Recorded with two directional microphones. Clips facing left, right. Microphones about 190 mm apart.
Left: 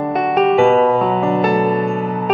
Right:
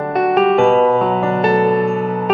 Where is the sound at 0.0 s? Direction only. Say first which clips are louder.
Right 1 dB; centre (ahead or behind).